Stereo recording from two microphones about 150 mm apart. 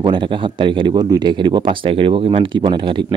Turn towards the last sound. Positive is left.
turn(degrees=-35)  # may be behind; listen again after turning